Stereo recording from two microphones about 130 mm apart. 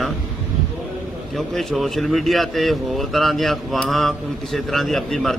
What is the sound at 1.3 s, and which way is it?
A man's voice, centre (ahead or behind).